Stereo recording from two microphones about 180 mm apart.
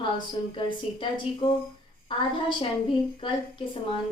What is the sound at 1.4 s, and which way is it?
A woman's voice, 30° left (ahead or behind).